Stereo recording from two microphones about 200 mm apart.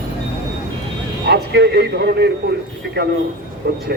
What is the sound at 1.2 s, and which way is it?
A man's voice, 55° right (ahead or behind).